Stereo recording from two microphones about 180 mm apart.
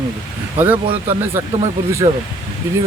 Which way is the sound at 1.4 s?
10° right (ahead or behind).